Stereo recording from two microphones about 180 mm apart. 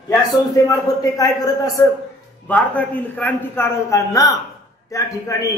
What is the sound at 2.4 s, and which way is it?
A man's voice, 10° left (ahead or behind).